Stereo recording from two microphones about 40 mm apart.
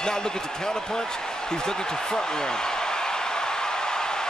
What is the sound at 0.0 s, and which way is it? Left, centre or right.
Basketball bounce, centre.